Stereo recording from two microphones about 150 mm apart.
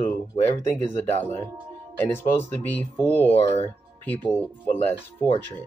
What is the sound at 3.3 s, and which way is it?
Speech, 40° left (ahead or behind).